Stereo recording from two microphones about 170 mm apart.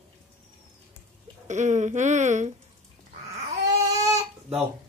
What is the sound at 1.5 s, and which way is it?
Speech, 45° right (ahead or behind).